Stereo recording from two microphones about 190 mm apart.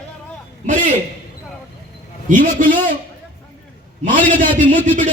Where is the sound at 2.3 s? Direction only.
45° right (ahead or behind).